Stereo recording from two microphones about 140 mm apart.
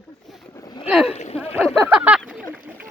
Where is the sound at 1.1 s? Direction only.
55° left (ahead or behind).